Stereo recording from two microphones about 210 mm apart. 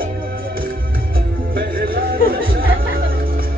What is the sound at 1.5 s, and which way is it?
Music, 45° right (ahead or behind).